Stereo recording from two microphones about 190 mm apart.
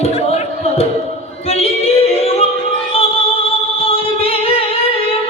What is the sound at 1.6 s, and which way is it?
Yodeling, 30° left (ahead or behind).